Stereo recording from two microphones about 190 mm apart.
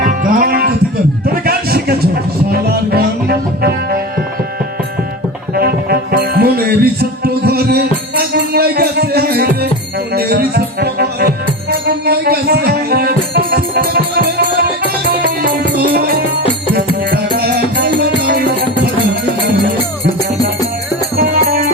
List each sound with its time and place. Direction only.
0.0 s music: 45° right (ahead or behind)
1.3 s a sound: 50° right (ahead or behind)
2.5 s music: 55° right (ahead or behind)
5.5 s music: 55° right (ahead or behind)
17.3 s music: 55° right (ahead or behind)
21.2 s music: 50° right (ahead or behind)